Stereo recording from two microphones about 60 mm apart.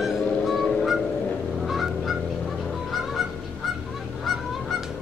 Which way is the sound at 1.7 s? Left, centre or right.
Centre.